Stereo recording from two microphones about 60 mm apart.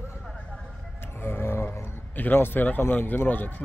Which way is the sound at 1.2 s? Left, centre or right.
Left.